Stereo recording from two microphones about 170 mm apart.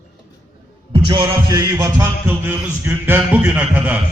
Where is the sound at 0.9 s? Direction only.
25° right (ahead or behind); by 3.9 s 10° right (ahead or behind).